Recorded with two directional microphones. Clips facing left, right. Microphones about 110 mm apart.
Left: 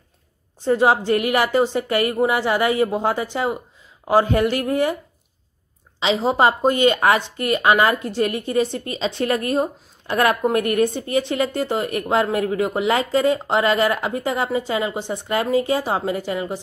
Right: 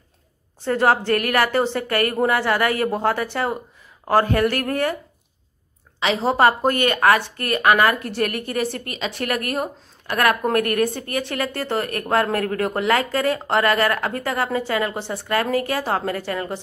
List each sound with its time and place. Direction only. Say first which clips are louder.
0.7 s a woman's voice: left 1 dB; 15° left (ahead or behind)
5.9 s a woman's voice: left 1 dB; 20° left (ahead or behind)